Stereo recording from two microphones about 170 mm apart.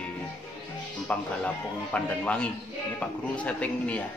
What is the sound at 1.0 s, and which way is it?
Speech, 5° left (ahead or behind).